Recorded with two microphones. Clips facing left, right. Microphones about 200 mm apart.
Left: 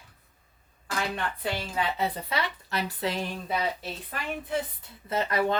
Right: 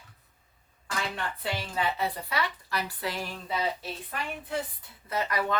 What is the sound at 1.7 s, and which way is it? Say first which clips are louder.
Speech: even; 20° left (ahead or behind).